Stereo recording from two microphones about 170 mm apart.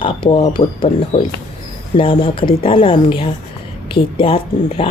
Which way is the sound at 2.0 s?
30° left (ahead or behind).